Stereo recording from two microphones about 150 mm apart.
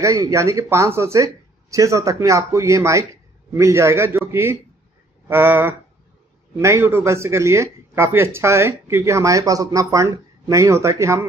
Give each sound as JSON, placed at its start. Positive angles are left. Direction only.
{"t": 0.0, "sound": "speech", "side_deg": -20}